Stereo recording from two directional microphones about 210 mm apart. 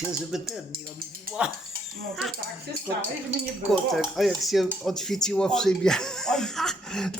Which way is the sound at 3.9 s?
Centre (ahead or behind).